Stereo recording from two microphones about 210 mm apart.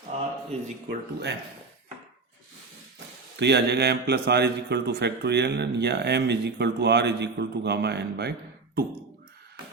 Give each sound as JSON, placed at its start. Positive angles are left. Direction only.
{"t": 0.5, "sound": "speech", "side_deg": -30}
{"t": 0.9, "sound": "a man's voice", "side_deg": -50}
{"t": 3.3, "sound": "a man's voice", "side_deg": -55}